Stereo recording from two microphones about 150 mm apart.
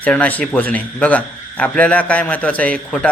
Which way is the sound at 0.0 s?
10° left (ahead or behind).